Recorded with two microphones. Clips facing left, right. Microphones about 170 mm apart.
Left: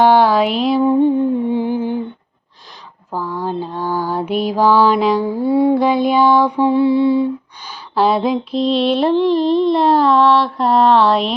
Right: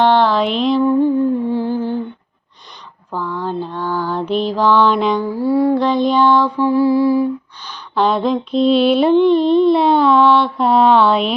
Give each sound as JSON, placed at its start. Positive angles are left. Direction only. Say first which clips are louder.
{"t": 0.0, "sound": "a sound", "louder": "left 2 dB", "side_deg": 10}
{"t": 0.8, "sound": "humming", "louder": "left 1 dB", "side_deg": 20}
{"t": 3.1, "sound": "mantra", "louder": "even", "side_deg": 10}
{"t": 5.2, "sound": "humming", "louder": "left 1 dB", "side_deg": 20}
{"t": 5.7, "sound": "music", "louder": "left 1 dB", "side_deg": 10}
{"t": 7.7, "sound": "female singing", "louder": "left 1 dB", "side_deg": 5}